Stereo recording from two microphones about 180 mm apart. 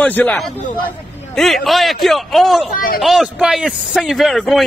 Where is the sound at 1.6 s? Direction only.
Centre (ahead or behind).